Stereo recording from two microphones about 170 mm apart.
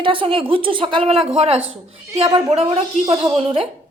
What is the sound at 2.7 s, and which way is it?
Speech, 35° right (ahead or behind).